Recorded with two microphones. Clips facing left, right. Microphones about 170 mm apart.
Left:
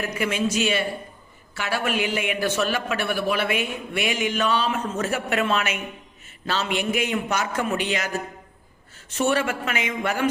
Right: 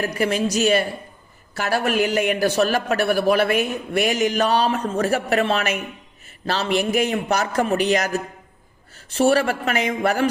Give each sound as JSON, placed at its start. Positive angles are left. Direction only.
{"t": 0.0, "sound": "a man's voice", "side_deg": -35}